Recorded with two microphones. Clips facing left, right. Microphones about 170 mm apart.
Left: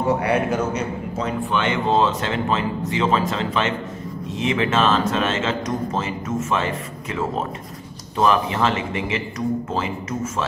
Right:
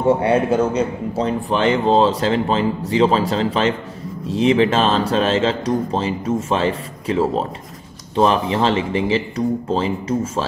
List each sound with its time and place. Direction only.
0.0 s a man's voice: 25° right (ahead or behind)